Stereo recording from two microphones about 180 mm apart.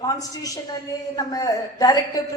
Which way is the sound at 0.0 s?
20° left (ahead or behind).